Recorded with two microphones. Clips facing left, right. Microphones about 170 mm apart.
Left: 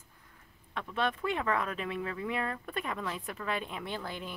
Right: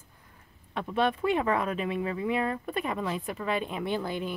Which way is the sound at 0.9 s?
10° right (ahead or behind).